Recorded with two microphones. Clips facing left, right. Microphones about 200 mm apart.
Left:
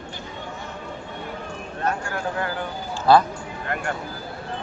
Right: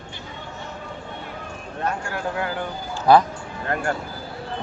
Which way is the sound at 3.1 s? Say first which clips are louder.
Right 1 dB; 15° right (ahead or behind).